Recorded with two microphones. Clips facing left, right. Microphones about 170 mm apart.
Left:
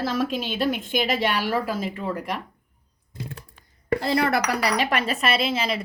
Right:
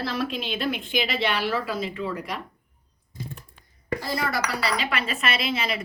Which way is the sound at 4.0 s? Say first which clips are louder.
Left 6 dB; 65° left (ahead or behind).